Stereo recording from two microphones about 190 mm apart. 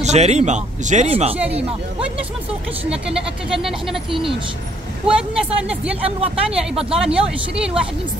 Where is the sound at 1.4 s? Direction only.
5° right (ahead or behind).